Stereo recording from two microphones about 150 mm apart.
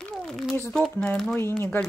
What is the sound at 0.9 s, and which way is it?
Speech, 5° left (ahead or behind).